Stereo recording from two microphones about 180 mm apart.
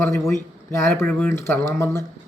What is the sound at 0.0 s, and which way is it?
Speech, 15° left (ahead or behind).